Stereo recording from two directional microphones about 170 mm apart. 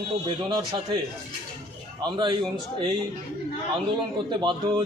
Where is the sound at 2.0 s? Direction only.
25° right (ahead or behind).